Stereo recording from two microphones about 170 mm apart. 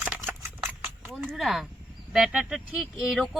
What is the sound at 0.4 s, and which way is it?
Horse, 10° right (ahead or behind).